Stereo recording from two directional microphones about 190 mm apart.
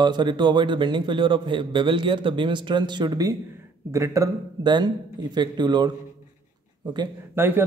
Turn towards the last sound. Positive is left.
turn(degrees=-10)  # may be behind; listen again after turning